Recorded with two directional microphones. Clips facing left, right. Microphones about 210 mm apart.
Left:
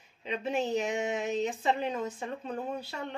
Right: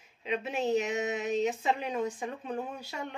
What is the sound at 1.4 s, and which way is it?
Speech, 10° right (ahead or behind).